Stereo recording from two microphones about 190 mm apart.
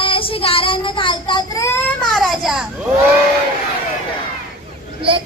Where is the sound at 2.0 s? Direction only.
Centre (ahead or behind).